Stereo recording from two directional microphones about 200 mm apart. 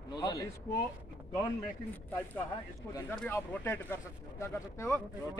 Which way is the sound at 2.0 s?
10° left (ahead or behind).